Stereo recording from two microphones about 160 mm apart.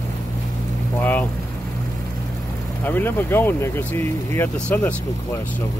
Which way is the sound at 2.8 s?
10° left (ahead or behind).